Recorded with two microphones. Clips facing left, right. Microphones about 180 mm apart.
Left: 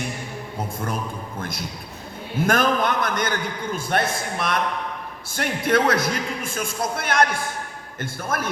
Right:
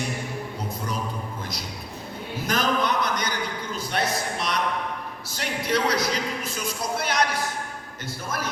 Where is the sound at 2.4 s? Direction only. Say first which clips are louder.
Left 4 dB; 50° left (ahead or behind).